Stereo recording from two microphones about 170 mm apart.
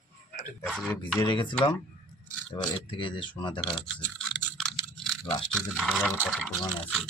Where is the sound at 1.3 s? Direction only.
30° left (ahead or behind).